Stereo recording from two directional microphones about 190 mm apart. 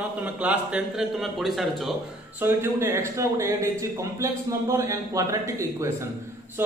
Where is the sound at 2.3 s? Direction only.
10° right (ahead or behind).